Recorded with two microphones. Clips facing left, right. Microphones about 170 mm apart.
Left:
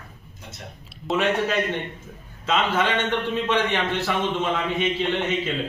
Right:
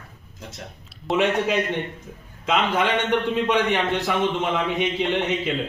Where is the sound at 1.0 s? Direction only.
20° right (ahead or behind).